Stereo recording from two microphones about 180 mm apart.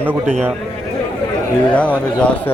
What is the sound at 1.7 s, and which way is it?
Speech, 10° left (ahead or behind).